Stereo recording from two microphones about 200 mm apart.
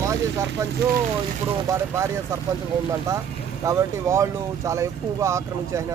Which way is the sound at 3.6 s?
15° right (ahead or behind).